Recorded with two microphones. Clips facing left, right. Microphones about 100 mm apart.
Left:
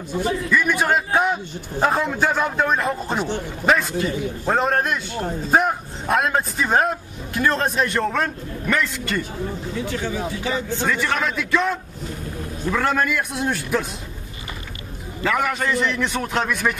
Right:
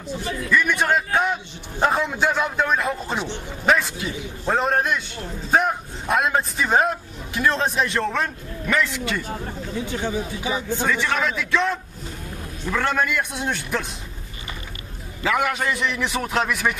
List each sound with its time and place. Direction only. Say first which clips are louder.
0.5 s a man's voice: right 2 dB; 5° left (ahead or behind)
9.8 s speech: even; 20° right (ahead or behind)
10.9 s a man's voice: even; centre (ahead or behind)
15.2 s a man's voice: even; 5° right (ahead or behind)